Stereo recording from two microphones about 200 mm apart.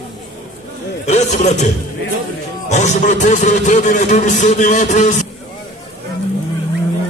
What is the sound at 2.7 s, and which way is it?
A man's voice, 35° left (ahead or behind).